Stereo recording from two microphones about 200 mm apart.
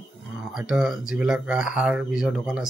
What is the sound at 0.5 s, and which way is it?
Speech, 5° right (ahead or behind).